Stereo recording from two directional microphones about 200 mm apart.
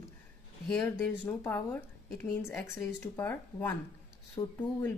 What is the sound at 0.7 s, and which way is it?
Speech, 10° left (ahead or behind).